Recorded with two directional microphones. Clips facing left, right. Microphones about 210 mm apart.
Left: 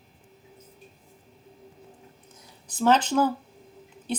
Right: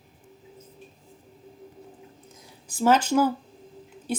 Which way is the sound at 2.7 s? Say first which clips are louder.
Right 1 dB; 10° right (ahead or behind).